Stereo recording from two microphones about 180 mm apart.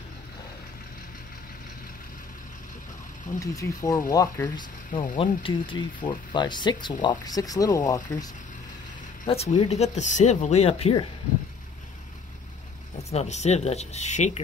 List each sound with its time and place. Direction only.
3.3 s speech: 20° left (ahead or behind)
9.2 s speech: 35° left (ahead or behind)
13.1 s speech: 35° left (ahead or behind)